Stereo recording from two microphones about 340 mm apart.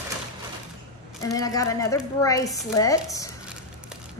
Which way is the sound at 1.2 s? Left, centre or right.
Centre.